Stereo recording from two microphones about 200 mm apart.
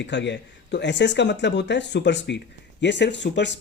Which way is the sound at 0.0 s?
60° left (ahead or behind).